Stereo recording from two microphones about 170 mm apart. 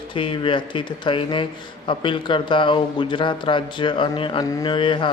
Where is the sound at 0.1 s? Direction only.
30° left (ahead or behind).